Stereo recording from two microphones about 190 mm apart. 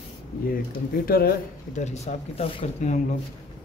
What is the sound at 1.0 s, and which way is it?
Speech, 50° left (ahead or behind).